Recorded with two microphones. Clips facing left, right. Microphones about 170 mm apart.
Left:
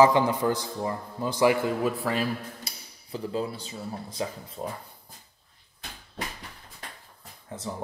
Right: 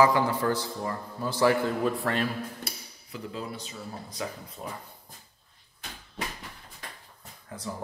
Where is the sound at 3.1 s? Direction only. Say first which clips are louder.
Left 6 dB; 30° left (ahead or behind).